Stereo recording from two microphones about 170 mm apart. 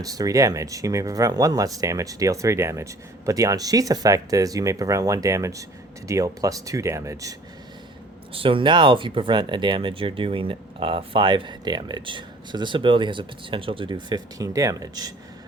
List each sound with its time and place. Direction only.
0.0 s speech: 20° right (ahead or behind)
8.3 s speech: 30° right (ahead or behind)